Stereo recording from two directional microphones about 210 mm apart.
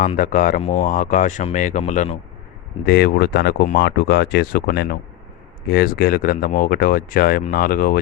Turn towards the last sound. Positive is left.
turn(degrees=40)  # may be behind; listen again after turning